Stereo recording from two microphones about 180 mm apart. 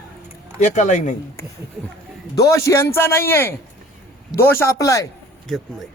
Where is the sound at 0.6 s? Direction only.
40° left (ahead or behind).